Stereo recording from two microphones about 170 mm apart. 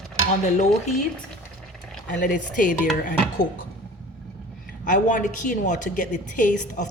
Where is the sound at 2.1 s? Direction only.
50° left (ahead or behind).